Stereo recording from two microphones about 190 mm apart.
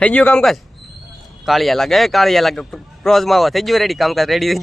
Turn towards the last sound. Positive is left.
turn(degrees=0)  # may be behind; listen again after turning